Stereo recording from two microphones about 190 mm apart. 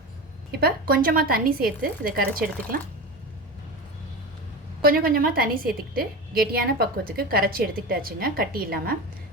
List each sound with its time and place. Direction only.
0.6 s a woman's voice: 50° right (ahead or behind)
4.8 s a woman's voice: 50° right (ahead or behind)